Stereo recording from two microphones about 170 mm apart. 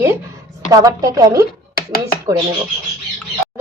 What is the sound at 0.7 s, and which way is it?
Speech, 20° right (ahead or behind).